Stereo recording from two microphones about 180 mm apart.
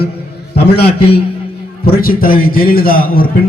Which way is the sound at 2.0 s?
55° left (ahead or behind).